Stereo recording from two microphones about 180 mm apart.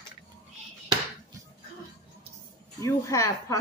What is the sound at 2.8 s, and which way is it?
Speech, 15° left (ahead or behind).